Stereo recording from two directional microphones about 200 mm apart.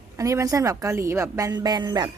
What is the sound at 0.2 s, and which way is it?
Speech, 15° right (ahead or behind).